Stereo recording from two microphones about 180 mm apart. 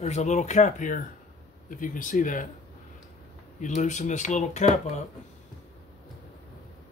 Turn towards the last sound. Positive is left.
turn(degrees=40)  # may be behind; listen again after turning